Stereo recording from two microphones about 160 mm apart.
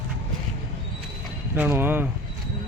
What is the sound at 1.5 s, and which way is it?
Speech, 15° right (ahead or behind).